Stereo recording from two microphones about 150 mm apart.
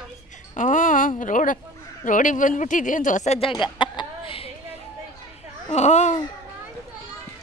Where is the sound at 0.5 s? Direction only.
60° left (ahead or behind).